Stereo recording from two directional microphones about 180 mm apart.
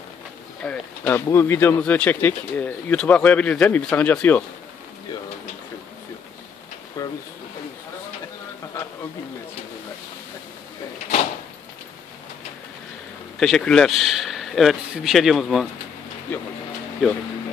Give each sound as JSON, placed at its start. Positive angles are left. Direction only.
{"t": 0.7, "sound": "speech", "side_deg": 10}
{"t": 7.0, "sound": "a sound", "side_deg": 20}
{"t": 13.4, "sound": "speech", "side_deg": 0}
{"t": 17.0, "sound": "speech", "side_deg": -5}